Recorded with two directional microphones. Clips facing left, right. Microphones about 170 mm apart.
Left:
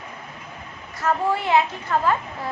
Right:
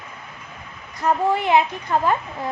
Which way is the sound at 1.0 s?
15° right (ahead or behind).